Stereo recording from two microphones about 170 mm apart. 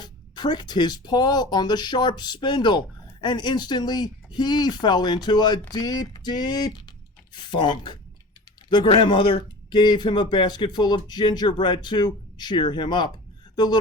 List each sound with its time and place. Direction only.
0.0 s speech: 25° left (ahead or behind)